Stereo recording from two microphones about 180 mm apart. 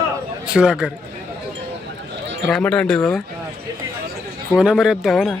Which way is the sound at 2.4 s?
5° left (ahead or behind).